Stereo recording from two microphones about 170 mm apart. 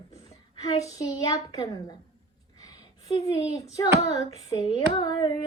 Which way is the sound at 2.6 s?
20° left (ahead or behind).